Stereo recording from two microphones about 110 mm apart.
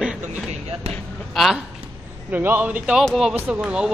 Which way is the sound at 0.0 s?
5° right (ahead or behind).